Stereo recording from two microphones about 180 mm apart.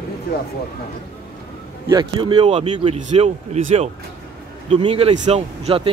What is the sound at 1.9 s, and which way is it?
Speech, 25° right (ahead or behind).